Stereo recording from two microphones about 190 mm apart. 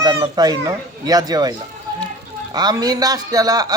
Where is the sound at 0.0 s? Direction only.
20° right (ahead or behind).